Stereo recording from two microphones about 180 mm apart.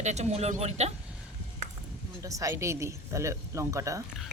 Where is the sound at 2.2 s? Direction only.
20° right (ahead or behind).